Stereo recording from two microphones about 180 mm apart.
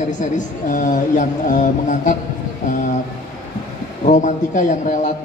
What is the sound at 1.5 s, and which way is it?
Speech, 45° left (ahead or behind).